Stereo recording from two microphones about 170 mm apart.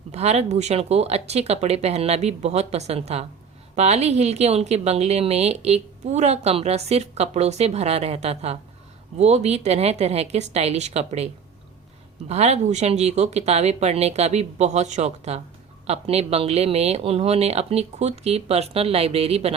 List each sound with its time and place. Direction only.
0.1 s a woman's voice: 40° right (ahead or behind)
12.3 s a woman's voice: 40° right (ahead or behind)